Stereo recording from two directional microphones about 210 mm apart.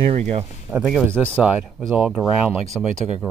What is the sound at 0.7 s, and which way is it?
Speech, 5° right (ahead or behind).